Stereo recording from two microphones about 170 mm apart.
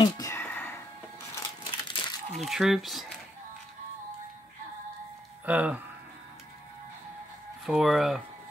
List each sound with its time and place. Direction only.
0.0 s a sound: 20° left (ahead or behind)
1.3 s crumpling: 25° left (ahead or behind)
2.3 s speech: centre (ahead or behind)
5.4 s speech: 10° right (ahead or behind)
7.6 s speech: centre (ahead or behind)